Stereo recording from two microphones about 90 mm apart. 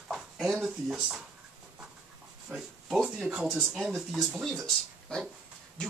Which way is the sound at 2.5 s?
5° right (ahead or behind).